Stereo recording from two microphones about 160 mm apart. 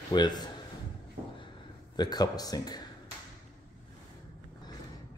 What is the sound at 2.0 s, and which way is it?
Speech, 25° left (ahead or behind).